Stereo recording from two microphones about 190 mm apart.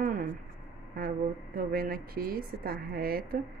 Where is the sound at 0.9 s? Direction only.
50° right (ahead or behind).